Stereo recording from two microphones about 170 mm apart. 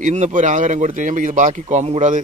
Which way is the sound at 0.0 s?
45° right (ahead or behind).